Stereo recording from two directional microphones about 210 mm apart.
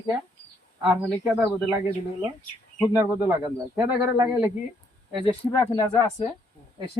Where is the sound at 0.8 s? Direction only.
10° right (ahead or behind).